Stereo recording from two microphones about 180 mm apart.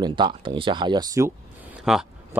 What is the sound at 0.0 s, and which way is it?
Speech, 25° right (ahead or behind).